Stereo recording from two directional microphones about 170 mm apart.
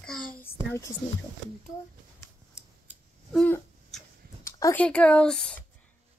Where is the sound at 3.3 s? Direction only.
5° left (ahead or behind).